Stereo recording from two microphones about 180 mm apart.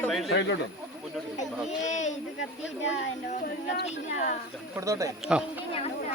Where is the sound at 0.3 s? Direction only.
75° left (ahead or behind).